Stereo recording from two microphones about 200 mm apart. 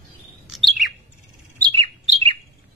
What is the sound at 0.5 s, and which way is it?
Chirp, centre (ahead or behind).